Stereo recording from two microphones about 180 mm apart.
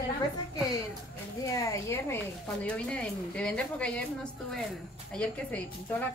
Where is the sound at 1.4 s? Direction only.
20° left (ahead or behind).